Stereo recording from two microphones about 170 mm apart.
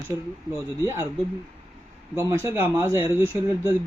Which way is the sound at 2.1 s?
15° right (ahead or behind).